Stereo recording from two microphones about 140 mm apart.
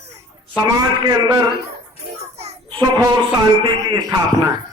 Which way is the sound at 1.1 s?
25° right (ahead or behind).